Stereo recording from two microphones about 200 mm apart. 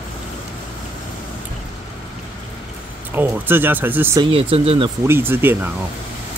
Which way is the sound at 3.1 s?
10° right (ahead or behind).